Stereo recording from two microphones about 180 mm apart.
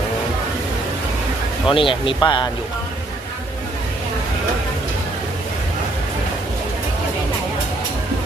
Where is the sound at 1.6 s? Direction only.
30° left (ahead or behind).